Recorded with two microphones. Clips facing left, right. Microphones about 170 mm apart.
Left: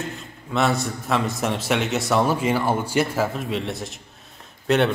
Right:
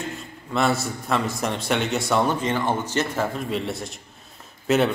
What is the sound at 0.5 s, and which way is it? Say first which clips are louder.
A man's voice: left 1 dB; centre (ahead or behind).